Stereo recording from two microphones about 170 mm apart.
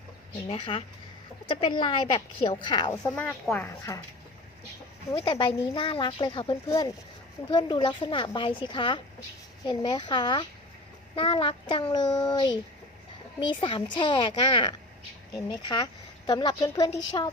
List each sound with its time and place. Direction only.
0.4 s speech: 35° left (ahead or behind)
2.9 s speech: 10° left (ahead or behind)
3.9 s speech: 20° left (ahead or behind)
5.1 s speech: 25° left (ahead or behind)